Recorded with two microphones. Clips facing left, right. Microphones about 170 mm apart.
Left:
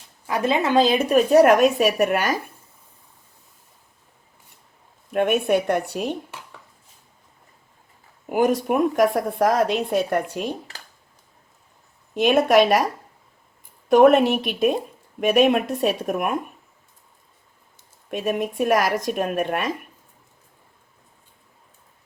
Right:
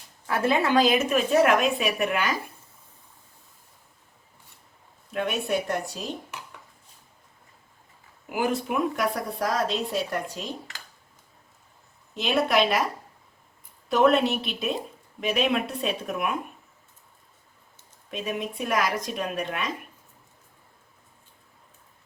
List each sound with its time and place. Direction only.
0.3 s a woman's voice: 15° left (ahead or behind); by 2.3 s 45° left (ahead or behind)
5.1 s a woman's voice: 55° left (ahead or behind)
8.3 s speech: 45° left (ahead or behind)
12.1 s speech: 50° left (ahead or behind)
13.9 s speech: 50° left (ahead or behind)
18.1 s speech: 45° left (ahead or behind)